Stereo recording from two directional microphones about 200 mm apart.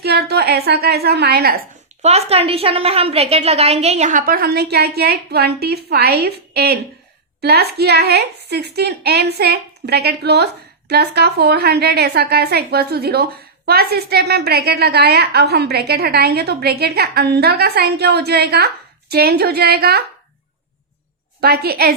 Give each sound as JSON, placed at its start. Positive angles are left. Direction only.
{"t": 0.0, "sound": "a woman's voice", "side_deg": -55}
{"t": 2.0, "sound": "a woman's voice", "side_deg": -30}
{"t": 21.4, "sound": "a woman's voice", "side_deg": -50}